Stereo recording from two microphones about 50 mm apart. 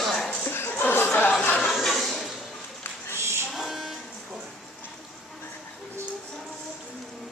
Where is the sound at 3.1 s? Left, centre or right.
Right.